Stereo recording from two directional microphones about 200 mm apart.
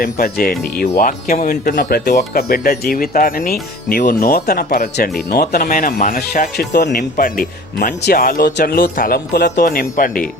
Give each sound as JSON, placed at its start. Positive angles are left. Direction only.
{"t": 0.0, "sound": "speech", "side_deg": 50}
{"t": 6.9, "sound": "speech", "side_deg": 45}